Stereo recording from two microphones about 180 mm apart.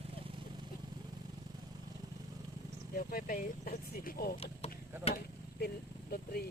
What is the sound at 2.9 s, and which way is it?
Speech, 55° left (ahead or behind).